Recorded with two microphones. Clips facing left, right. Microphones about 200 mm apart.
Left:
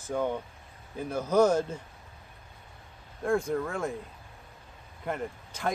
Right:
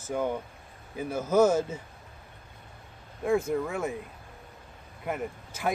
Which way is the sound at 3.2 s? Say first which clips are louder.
Right 1 dB; 5° right (ahead or behind).